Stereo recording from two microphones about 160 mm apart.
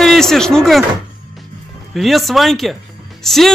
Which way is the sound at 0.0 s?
Centre (ahead or behind).